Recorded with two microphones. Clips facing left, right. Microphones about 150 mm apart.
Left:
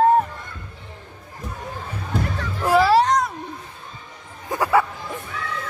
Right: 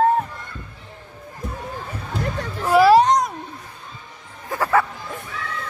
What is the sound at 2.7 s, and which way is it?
Music, 15° right (ahead or behind).